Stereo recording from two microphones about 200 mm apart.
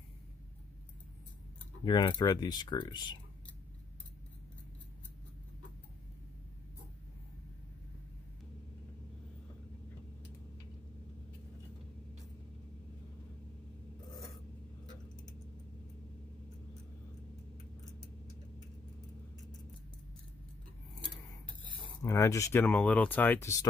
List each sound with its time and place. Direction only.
1.9 s speech: 25° left (ahead or behind)
22.0 s speech: 15° left (ahead or behind)